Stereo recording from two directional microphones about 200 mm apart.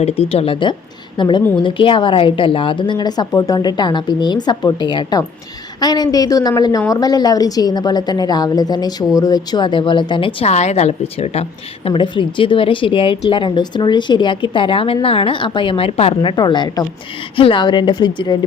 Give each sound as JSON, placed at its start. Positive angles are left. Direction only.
{"t": 0.0, "sound": "a woman's voice", "side_deg": 30}